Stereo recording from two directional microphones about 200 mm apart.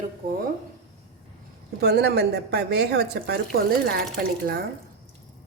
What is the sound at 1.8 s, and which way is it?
A woman's voice, 55° right (ahead or behind).